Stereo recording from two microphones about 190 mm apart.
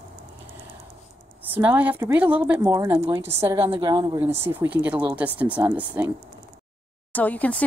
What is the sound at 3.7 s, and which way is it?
Speech, 25° right (ahead or behind).